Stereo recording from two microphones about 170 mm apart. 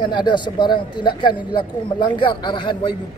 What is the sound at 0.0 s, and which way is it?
Speech, 25° left (ahead or behind).